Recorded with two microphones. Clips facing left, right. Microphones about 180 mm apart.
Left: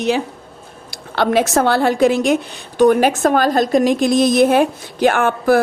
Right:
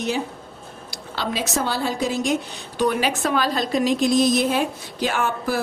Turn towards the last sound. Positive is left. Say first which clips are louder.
# left 9 dB
turn(degrees=55)  # may be behind; listen again after turning